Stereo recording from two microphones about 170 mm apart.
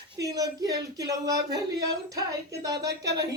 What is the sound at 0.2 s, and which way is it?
Speech, 20° right (ahead or behind).